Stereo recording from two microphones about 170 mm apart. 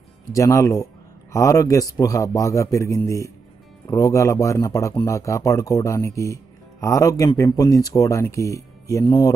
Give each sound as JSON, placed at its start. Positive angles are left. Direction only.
{"t": 0.3, "sound": "speech", "side_deg": 20}